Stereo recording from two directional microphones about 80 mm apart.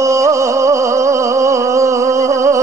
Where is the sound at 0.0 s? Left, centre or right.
Right.